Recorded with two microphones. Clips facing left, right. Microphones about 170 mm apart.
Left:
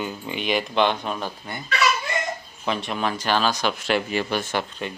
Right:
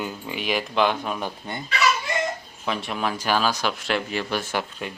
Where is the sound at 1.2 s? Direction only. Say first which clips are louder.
Right 1 dB; 20° right (ahead or behind).